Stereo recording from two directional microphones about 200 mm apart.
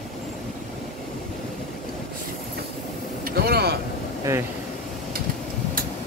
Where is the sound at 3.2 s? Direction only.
50° right (ahead or behind).